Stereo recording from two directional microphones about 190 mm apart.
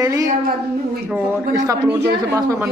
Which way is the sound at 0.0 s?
15° right (ahead or behind).